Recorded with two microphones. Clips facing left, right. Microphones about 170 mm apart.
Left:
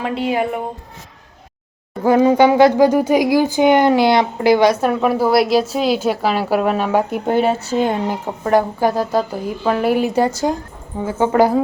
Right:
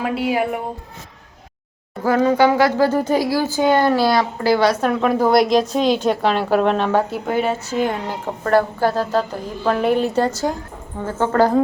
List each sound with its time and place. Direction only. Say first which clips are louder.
0.0 s speech: left 1 dB; 10° right (ahead or behind)
2.0 s speech: left 3 dB; 20° left (ahead or behind)
7.3 s speech: left 4 dB; 30° left (ahead or behind)
8.0 s speech: left 3 dB; 15° left (ahead or behind)